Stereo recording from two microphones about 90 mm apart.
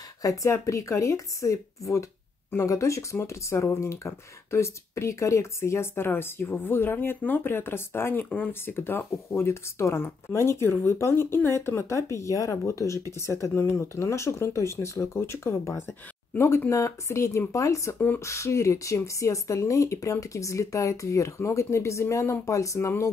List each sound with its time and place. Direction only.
0.2 s speech: 35° left (ahead or behind)
17.9 s speech: 20° left (ahead or behind)
18.2 s speech: 35° left (ahead or behind)